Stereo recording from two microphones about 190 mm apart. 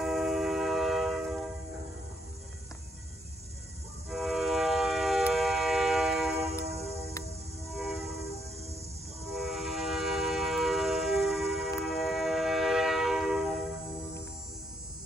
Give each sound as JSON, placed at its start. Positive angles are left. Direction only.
{"t": 0.0, "sound": "train", "side_deg": 0}
{"t": 4.1, "sound": "train", "side_deg": 0}
{"t": 6.6, "sound": "music", "side_deg": -35}
{"t": 7.7, "sound": "train", "side_deg": 0}
{"t": 9.3, "sound": "train", "side_deg": 0}